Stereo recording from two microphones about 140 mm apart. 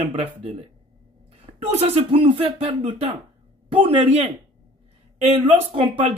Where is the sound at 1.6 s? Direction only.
50° right (ahead or behind).